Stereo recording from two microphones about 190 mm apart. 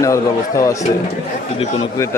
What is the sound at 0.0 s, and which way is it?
Speech, 15° left (ahead or behind).